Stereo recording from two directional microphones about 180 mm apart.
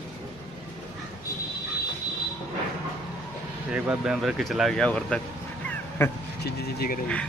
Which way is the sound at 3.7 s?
5° right (ahead or behind).